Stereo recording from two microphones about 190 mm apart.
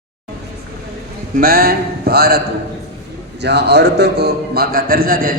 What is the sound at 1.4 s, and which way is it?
A man's voice, 50° right (ahead or behind).